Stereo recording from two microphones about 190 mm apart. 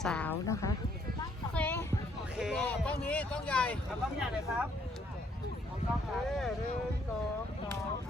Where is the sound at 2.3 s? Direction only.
Centre (ahead or behind).